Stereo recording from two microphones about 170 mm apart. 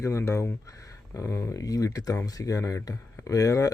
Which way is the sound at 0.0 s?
15° left (ahead or behind).